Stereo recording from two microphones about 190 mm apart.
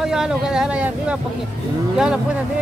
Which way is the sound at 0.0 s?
5° right (ahead or behind).